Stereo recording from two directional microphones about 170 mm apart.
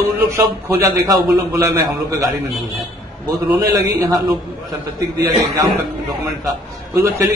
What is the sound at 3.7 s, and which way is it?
Speech, 20° right (ahead or behind).